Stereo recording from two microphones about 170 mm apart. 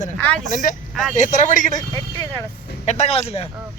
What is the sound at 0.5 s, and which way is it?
A man's voice, 55° left (ahead or behind).